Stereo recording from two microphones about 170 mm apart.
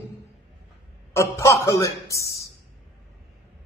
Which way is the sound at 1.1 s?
15° left (ahead or behind).